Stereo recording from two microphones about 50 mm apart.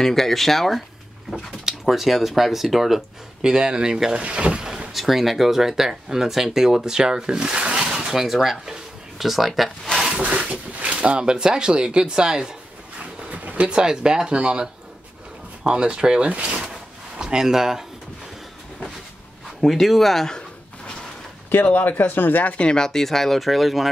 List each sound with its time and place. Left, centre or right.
0.0 s speech: centre
1.9 s speech: centre
3.4 s speech: centre
4.2 s boat: right
4.9 s speech: centre
10.2 s speech: right
13.3 s speech: right
17.2 s speech: centre
19.6 s speech: centre
21.5 s speech: left
22.7 s speech: centre